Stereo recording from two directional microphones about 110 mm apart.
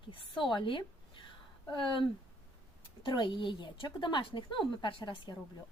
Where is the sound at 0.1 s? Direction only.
50° left (ahead or behind).